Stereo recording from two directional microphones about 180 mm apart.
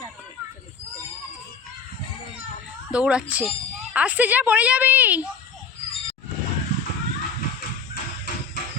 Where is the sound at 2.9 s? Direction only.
5° right (ahead or behind).